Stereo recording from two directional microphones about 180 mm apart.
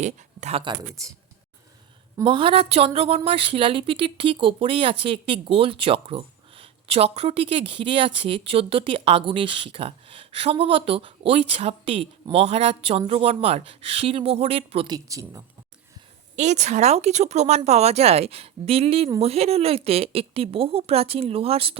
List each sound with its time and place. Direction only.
0.0 s speech: 40° right (ahead or behind)
0.6 s speech: 20° right (ahead or behind)
2.2 s speech: 30° right (ahead or behind)
16.3 s speech: 40° right (ahead or behind)